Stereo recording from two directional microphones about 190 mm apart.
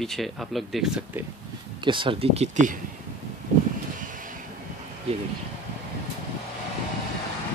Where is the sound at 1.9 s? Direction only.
25° right (ahead or behind).